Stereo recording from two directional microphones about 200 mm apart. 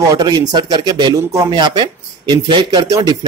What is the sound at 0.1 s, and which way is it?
Speech, 20° right (ahead or behind).